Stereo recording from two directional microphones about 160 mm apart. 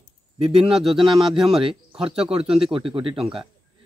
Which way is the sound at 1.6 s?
35° right (ahead or behind).